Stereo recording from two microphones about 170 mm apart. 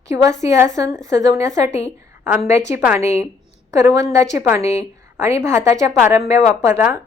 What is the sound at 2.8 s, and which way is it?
A woman's voice, 15° right (ahead or behind).